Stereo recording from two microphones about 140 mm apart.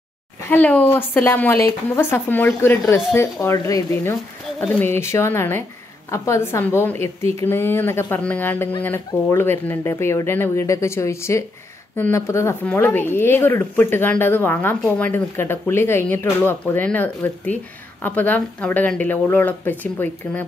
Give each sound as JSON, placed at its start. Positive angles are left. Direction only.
{"t": 0.5, "sound": "a woman's voice", "side_deg": 10}